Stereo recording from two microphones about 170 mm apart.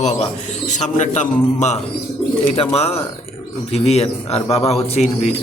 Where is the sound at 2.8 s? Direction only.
35° left (ahead or behind).